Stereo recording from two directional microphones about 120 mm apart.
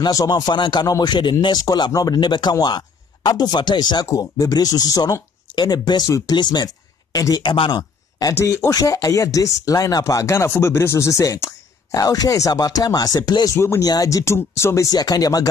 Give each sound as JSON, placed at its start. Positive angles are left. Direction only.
{"t": 0.0, "sound": "speech", "side_deg": 35}